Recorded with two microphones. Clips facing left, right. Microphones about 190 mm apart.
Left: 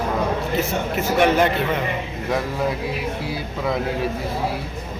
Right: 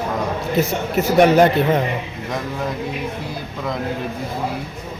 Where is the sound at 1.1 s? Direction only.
40° right (ahead or behind).